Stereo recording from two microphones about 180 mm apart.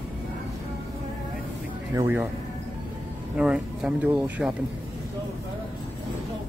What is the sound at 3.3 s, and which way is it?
Speech, 5° right (ahead or behind).